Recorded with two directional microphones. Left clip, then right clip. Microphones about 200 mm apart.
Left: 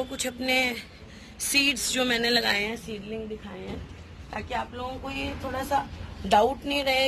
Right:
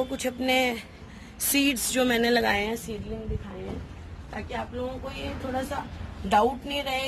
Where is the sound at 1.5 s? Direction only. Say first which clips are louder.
Left 2 dB; 45° right (ahead or behind); by 3.0 s 25° right (ahead or behind).